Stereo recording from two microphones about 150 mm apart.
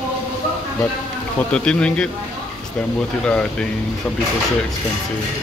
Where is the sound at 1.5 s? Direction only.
5° left (ahead or behind).